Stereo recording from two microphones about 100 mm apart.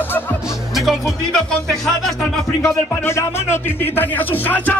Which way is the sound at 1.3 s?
5° left (ahead or behind).